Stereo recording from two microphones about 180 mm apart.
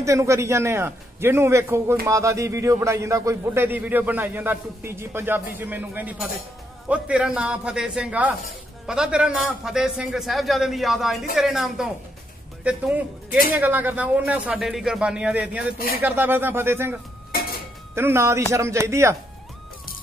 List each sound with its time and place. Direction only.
0.0 s a man's voice: 15° right (ahead or behind)
17.3 s a sound: 55° left (ahead or behind)
17.9 s a man's voice: 15° right (ahead or behind)